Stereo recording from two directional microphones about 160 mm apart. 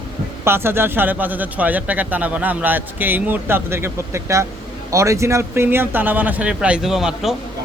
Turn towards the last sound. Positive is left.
turn(degrees=-5)  # may be behind; listen again after turning